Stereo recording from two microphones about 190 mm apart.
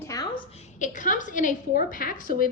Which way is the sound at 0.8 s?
40° left (ahead or behind).